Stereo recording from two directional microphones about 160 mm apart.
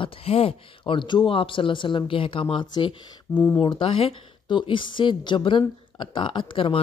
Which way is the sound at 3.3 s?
10° left (ahead or behind).